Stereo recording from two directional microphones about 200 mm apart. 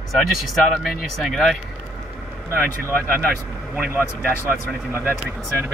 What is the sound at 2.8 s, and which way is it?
Speech, 10° left (ahead or behind).